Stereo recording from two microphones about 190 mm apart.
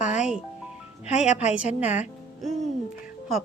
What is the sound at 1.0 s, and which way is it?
Speech, 35° left (ahead or behind).